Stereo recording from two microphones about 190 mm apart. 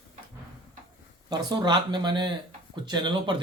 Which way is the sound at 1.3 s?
20° right (ahead or behind).